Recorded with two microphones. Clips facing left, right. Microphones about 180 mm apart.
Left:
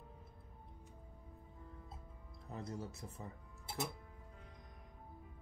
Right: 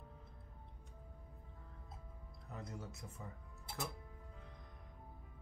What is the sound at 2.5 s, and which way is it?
Speech, 35° left (ahead or behind).